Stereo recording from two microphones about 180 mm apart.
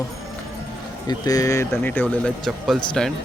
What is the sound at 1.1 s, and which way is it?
Speech, 20° left (ahead or behind).